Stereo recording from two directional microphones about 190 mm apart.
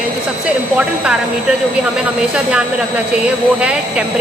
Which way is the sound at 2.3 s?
5° right (ahead or behind).